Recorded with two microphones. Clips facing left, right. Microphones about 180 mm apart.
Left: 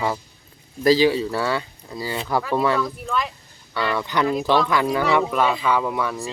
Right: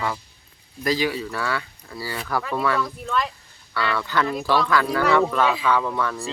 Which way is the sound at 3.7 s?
20° left (ahead or behind).